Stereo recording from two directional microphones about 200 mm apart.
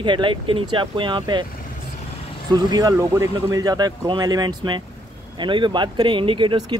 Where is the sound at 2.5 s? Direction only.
20° right (ahead or behind).